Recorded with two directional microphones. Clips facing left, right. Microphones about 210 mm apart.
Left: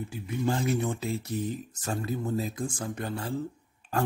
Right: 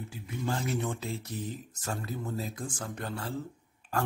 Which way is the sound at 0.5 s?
10° left (ahead or behind).